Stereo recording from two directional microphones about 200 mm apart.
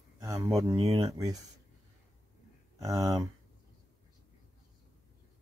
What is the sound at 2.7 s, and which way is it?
Speech, 15° right (ahead or behind).